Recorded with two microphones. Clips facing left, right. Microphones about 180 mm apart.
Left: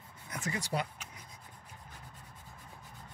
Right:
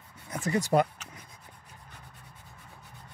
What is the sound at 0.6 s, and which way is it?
Speech, 50° right (ahead or behind).